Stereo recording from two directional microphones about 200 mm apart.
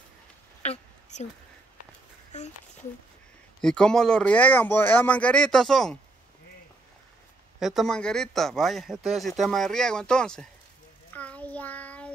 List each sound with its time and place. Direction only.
0.6 s a sound: 35° left (ahead or behind)
2.3 s speech: 35° left (ahead or behind)
3.6 s speech: 5° left (ahead or behind)
7.6 s speech: centre (ahead or behind)
11.1 s child singing: 5° left (ahead or behind)